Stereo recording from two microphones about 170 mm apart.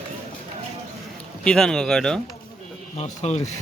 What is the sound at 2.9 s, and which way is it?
Speech, 40° left (ahead or behind).